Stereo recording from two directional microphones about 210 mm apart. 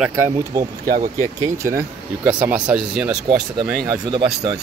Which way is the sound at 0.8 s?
40° right (ahead or behind).